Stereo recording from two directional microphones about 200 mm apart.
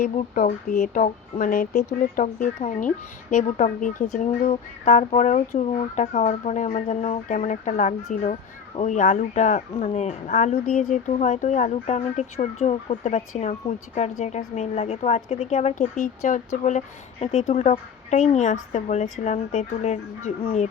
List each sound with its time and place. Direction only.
0.0 s speech: 45° left (ahead or behind)